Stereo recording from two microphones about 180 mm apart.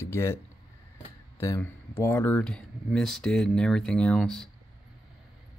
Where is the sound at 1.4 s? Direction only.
15° left (ahead or behind).